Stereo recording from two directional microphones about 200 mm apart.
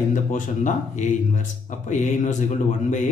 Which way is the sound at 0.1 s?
40° left (ahead or behind).